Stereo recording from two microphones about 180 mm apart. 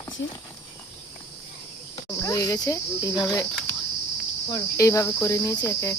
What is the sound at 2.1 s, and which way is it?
Cricket, 20° left (ahead or behind).